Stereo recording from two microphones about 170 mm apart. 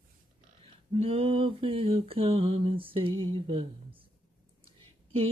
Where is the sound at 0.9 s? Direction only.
35° right (ahead or behind).